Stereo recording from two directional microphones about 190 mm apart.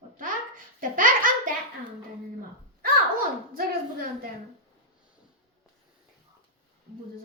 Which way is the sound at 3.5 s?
50° right (ahead or behind).